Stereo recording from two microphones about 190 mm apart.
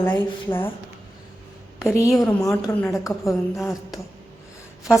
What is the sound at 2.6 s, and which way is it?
Speech, 15° left (ahead or behind).